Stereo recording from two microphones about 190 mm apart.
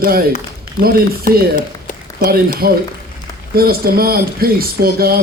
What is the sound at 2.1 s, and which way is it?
Speech, 55° right (ahead or behind).